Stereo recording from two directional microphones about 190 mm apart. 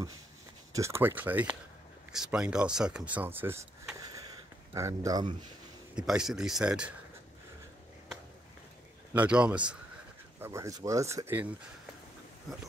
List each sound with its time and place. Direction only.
0.7 s speech: 15° right (ahead or behind)
4.7 s speech: 15° right (ahead or behind)
5.9 s speech: 5° right (ahead or behind)
9.1 s speech: 5° right (ahead or behind)